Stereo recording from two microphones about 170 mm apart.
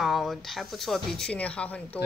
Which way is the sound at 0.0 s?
Centre (ahead or behind).